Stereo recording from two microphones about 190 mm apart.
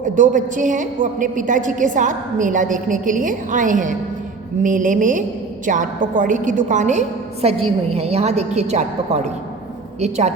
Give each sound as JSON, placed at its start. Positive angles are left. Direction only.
{"t": 0.2, "sound": "a woman's voice", "side_deg": -40}